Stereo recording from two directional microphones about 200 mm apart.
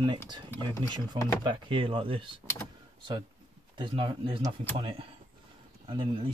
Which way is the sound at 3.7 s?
25° right (ahead or behind).